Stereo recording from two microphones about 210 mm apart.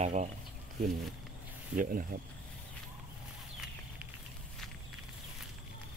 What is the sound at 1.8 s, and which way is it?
Speech, 40° right (ahead or behind).